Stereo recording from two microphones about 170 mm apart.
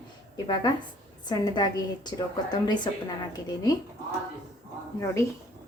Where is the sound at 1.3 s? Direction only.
25° left (ahead or behind).